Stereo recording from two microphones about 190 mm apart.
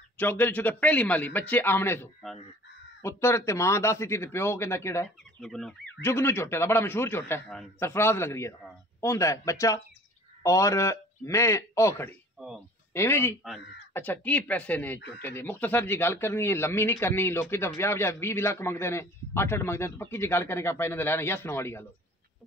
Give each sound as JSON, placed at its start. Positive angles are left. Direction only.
{"t": 0.2, "sound": "speech", "side_deg": 10}
{"t": 5.4, "sound": "speech", "side_deg": 0}
{"t": 6.0, "sound": "speech", "side_deg": 15}
{"t": 15.0, "sound": "speech", "side_deg": 65}
{"t": 15.2, "sound": "speech", "side_deg": 10}